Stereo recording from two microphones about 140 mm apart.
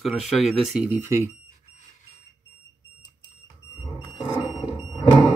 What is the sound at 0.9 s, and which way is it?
Speech, 15° right (ahead or behind).